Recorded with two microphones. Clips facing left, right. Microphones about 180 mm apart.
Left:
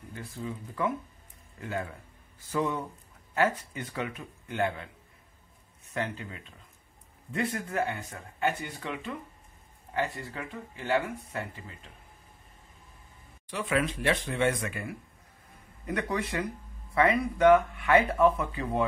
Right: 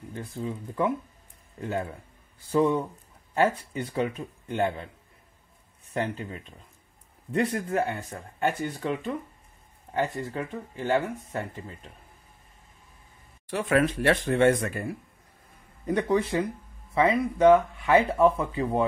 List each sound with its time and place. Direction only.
0.4 s speech: 30° right (ahead or behind)
3.3 s speech: 35° right (ahead or behind)
5.9 s speech: 40° right (ahead or behind)
13.5 s speech: 50° right (ahead or behind)
15.9 s speech: 30° right (ahead or behind)